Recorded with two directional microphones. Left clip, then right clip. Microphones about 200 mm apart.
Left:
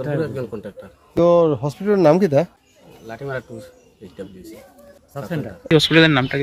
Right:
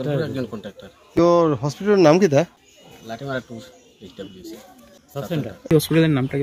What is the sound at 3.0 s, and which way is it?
Speech, 30° left (ahead or behind).